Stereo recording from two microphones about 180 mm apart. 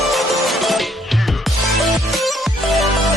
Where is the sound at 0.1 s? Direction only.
Centre (ahead or behind).